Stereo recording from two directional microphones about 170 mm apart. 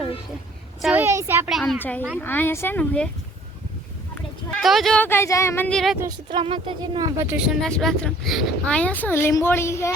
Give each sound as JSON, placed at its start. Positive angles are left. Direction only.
{"t": 0.8, "sound": "a woman's voice", "side_deg": 0}
{"t": 1.0, "sound": "a child's voice", "side_deg": -15}
{"t": 1.5, "sound": "a woman's voice", "side_deg": 0}
{"t": 1.8, "sound": "speech", "side_deg": 10}
{"t": 4.5, "sound": "speech", "side_deg": 0}
{"t": 6.2, "sound": "speech", "side_deg": -30}
{"t": 7.3, "sound": "speech", "side_deg": -5}